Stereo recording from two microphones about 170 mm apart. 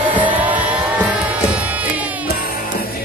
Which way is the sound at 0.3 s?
10° right (ahead or behind).